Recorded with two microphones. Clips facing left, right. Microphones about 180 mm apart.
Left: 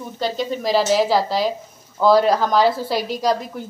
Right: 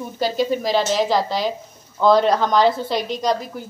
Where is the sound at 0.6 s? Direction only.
Centre (ahead or behind).